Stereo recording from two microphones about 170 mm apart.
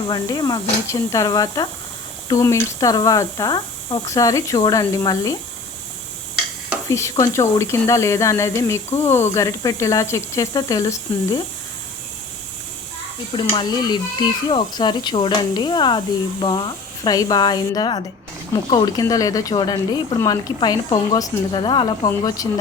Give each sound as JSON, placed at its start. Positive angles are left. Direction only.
{"t": 0.1, "sound": "speech", "side_deg": 25}
{"t": 6.8, "sound": "speech", "side_deg": 15}
{"t": 13.3, "sound": "speech", "side_deg": 30}